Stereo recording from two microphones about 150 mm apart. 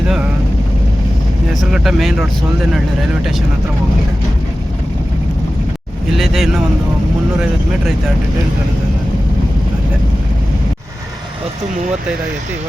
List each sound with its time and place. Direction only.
1.7 s speech: 5° right (ahead or behind)
6.1 s speech: centre (ahead or behind)